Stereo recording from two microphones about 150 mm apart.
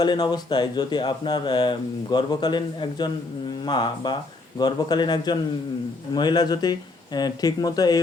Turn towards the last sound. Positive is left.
turn(degrees=25)  # may be behind; listen again after turning